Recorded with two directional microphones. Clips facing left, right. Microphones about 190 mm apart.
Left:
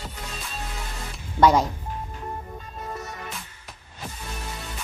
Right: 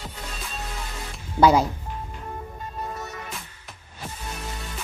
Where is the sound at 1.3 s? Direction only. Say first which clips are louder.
Right 1 dB; 5° right (ahead or behind).